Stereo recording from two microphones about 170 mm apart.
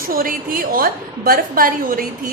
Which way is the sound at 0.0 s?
55° right (ahead or behind).